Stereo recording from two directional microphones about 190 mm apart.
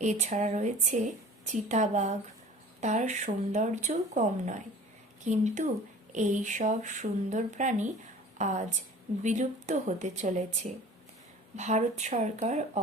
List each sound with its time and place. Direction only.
0.0 s a woman's voice: 40° right (ahead or behind)